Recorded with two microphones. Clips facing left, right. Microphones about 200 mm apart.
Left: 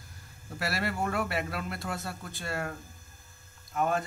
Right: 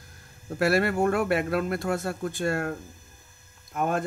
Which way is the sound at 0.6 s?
50° right (ahead or behind).